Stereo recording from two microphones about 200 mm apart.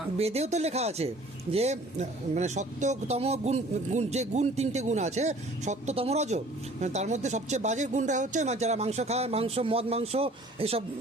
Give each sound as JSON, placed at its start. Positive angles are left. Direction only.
{"t": 0.2, "sound": "speech", "side_deg": -30}